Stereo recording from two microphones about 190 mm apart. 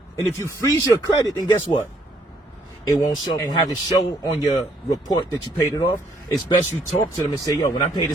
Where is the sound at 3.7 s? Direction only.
20° left (ahead or behind).